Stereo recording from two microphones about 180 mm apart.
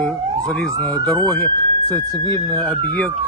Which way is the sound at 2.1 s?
20° left (ahead or behind).